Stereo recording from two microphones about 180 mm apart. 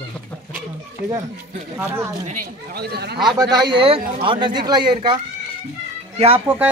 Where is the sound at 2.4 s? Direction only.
60° right (ahead or behind).